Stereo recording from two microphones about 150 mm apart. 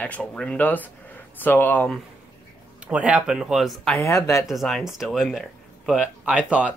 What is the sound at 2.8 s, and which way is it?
Speech, 10° right (ahead or behind).